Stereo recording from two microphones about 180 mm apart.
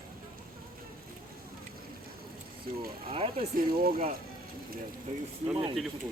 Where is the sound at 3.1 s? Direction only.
30° right (ahead or behind).